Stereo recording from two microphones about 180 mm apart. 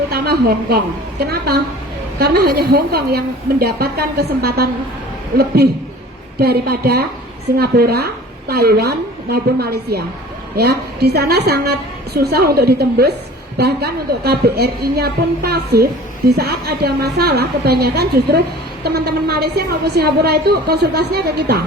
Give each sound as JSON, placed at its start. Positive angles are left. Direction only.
{"t": 0.1, "sound": "a woman's voice", "side_deg": -60}
{"t": 6.4, "sound": "a woman's voice", "side_deg": -60}